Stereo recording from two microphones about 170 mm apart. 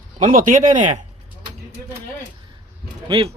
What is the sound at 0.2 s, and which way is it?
Speech, 50° right (ahead or behind).